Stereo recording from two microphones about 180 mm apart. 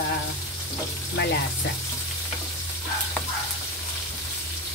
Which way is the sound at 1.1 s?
65° left (ahead or behind).